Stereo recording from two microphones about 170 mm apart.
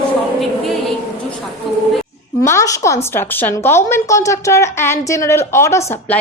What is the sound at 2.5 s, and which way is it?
A woman's voice, 20° left (ahead or behind).